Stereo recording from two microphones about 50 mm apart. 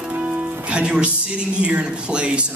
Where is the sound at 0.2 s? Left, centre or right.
Right.